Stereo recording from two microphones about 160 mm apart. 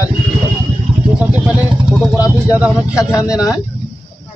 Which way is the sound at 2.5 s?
5° right (ahead or behind).